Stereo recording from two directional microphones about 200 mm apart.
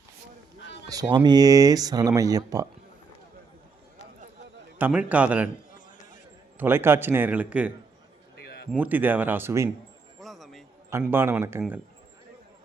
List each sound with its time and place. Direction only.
0.9 s speech: 20° right (ahead or behind)
4.8 s speech: 5° right (ahead or behind)
6.6 s speech: 10° right (ahead or behind)
8.7 s speech: 10° right (ahead or behind)
10.2 s music: centre (ahead or behind)
10.8 s speech: 10° right (ahead or behind)